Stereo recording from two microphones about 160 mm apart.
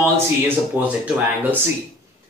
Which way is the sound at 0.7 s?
10° right (ahead or behind).